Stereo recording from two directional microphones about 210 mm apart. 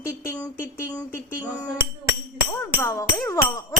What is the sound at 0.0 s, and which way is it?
Speech, 10° left (ahead or behind).